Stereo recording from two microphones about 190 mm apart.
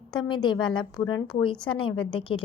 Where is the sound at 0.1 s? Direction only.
25° left (ahead or behind).